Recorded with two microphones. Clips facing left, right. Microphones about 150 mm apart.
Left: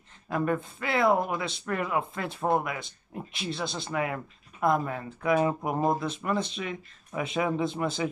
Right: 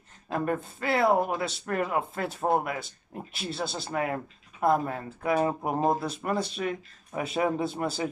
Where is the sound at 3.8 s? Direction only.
40° right (ahead or behind).